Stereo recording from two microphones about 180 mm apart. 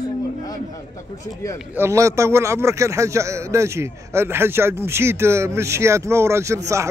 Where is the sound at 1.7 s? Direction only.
15° right (ahead or behind).